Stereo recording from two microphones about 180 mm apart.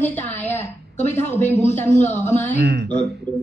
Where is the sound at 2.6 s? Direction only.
65° right (ahead or behind).